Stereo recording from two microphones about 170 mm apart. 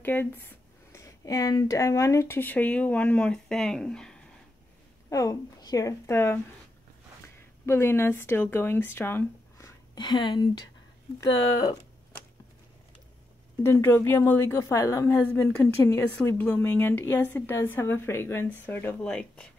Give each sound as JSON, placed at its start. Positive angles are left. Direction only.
{"t": 0.0, "sound": "a woman's voice", "side_deg": 10}
{"t": 5.1, "sound": "a woman's voice", "side_deg": 20}
{"t": 7.6, "sound": "speech", "side_deg": 15}
{"t": 13.6, "sound": "a woman's voice", "side_deg": 15}